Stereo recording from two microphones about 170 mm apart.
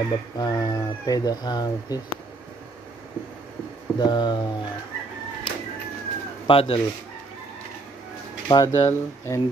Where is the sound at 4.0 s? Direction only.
25° left (ahead or behind).